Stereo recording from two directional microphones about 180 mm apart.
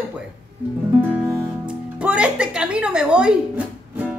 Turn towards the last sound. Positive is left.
turn(degrees=-5)  # may be behind; listen again after turning